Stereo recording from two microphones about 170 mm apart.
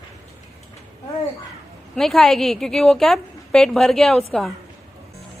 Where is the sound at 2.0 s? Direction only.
Centre (ahead or behind).